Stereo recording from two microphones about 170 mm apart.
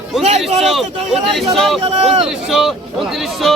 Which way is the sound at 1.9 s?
35° right (ahead or behind).